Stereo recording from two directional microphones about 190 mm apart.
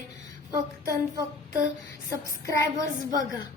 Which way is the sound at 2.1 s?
15° left (ahead or behind).